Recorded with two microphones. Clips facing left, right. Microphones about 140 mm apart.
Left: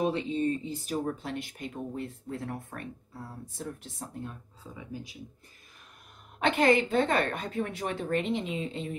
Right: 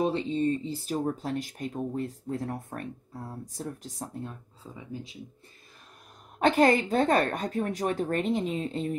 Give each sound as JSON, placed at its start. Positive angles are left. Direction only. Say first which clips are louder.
{"t": 0.0, "sound": "speech", "louder": "right 2 dB", "side_deg": -30}
{"t": 6.4, "sound": "speech", "louder": "right 2 dB", "side_deg": -40}